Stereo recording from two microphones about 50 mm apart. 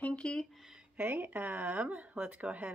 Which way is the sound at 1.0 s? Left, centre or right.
Right.